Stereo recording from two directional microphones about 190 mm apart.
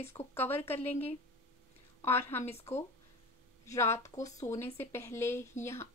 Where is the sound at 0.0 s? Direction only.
15° left (ahead or behind).